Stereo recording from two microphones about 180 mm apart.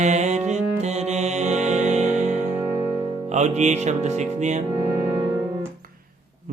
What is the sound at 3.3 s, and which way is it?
Music, 40° right (ahead or behind).